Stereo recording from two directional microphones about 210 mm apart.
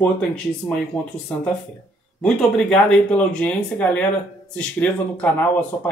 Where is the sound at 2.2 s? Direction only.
5° left (ahead or behind).